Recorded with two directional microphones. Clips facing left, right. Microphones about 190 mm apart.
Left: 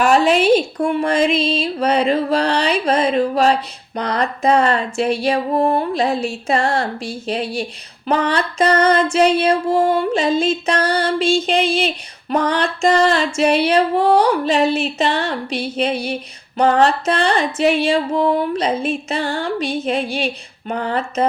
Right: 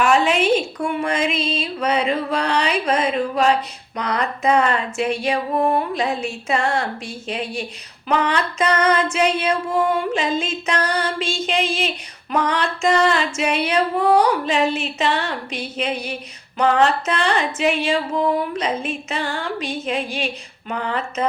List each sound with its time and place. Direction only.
0.0 s music: 35° left (ahead or behind)